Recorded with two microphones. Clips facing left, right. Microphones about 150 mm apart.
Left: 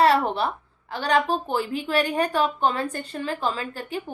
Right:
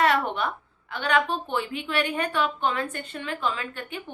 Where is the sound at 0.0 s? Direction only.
35° left (ahead or behind).